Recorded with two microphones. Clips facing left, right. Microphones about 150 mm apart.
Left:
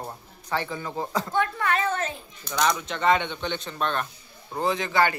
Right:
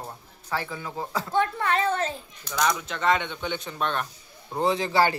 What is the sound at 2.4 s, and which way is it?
Speech, centre (ahead or behind).